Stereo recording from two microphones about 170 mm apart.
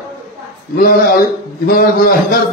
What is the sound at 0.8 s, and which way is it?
A man's voice, 65° left (ahead or behind).